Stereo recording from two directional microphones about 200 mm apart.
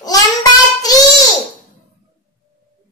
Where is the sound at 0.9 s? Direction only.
20° left (ahead or behind).